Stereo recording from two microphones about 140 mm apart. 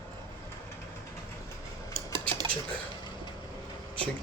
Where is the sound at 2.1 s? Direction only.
35° right (ahead or behind).